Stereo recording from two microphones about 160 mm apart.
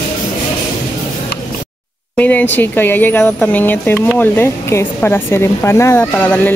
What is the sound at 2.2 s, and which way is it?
Speech, 10° left (ahead or behind).